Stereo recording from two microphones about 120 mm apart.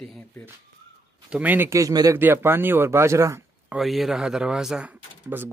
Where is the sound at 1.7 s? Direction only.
30° right (ahead or behind).